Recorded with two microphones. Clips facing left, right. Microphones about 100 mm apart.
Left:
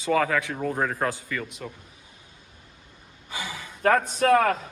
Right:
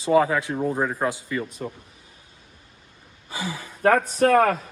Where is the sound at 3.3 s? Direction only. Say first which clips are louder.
Right 3 dB; 35° right (ahead or behind).